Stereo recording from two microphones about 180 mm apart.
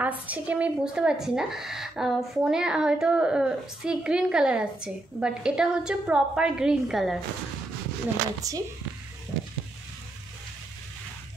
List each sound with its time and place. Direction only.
0.0 s speech: 10° right (ahead or behind)
8.4 s speech: 20° right (ahead or behind)